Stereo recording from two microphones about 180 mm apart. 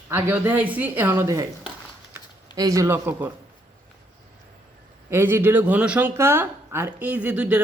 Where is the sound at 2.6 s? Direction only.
20° right (ahead or behind).